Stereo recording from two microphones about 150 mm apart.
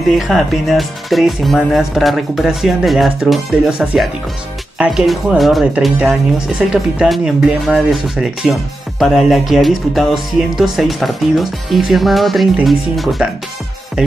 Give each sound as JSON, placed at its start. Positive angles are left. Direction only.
{"t": 0.1, "sound": "speech", "side_deg": 0}